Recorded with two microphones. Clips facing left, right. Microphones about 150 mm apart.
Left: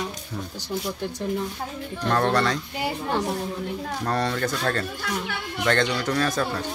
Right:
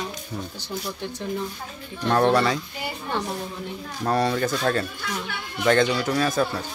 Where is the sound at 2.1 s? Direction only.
10° right (ahead or behind).